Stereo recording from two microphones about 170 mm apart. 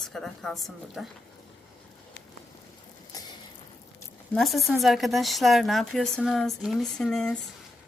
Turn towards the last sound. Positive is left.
turn(degrees=5)  # may be behind; listen again after turning